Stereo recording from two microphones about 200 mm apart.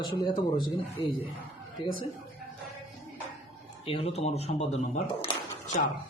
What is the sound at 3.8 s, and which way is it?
Speech, 30° left (ahead or behind).